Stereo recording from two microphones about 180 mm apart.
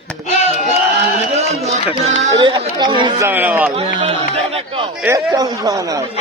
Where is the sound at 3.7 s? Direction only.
35° right (ahead or behind).